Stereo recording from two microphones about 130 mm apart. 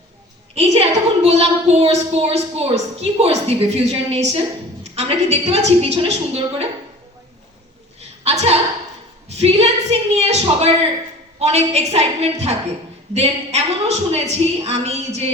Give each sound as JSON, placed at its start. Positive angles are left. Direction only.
{"t": 0.5, "sound": "a woman's voice", "side_deg": -55}
{"t": 8.2, "sound": "a sound", "side_deg": -55}
{"t": 11.3, "sound": "a woman's voice", "side_deg": -55}